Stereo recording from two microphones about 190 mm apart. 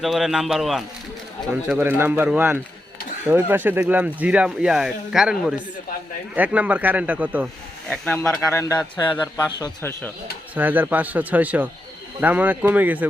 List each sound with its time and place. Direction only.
0.0 s speech: centre (ahead or behind)
7.9 s a man's voice: 10° left (ahead or behind)
10.5 s speech: 10° right (ahead or behind)